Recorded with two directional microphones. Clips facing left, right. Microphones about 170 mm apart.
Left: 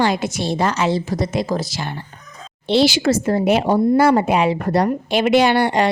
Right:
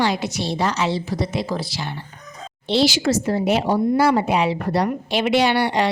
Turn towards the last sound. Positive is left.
turn(degrees=50)  # may be behind; listen again after turning